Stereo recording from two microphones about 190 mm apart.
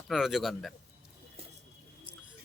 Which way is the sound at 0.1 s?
Centre (ahead or behind).